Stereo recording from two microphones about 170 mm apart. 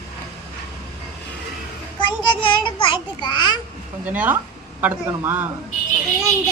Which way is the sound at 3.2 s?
25° left (ahead or behind).